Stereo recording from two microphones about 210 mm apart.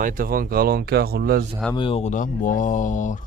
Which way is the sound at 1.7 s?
25° left (ahead or behind).